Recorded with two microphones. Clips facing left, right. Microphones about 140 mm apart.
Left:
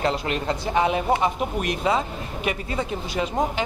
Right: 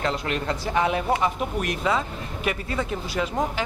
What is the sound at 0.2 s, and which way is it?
Speech, 25° left (ahead or behind).